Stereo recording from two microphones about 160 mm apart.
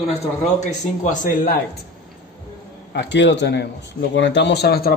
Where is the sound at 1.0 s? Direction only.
55° left (ahead or behind).